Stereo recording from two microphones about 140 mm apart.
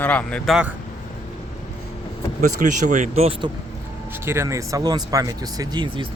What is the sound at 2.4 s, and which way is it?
Speech, 65° right (ahead or behind).